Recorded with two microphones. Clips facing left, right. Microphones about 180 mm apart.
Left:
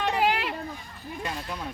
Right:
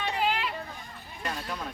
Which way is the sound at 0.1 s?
70° left (ahead or behind).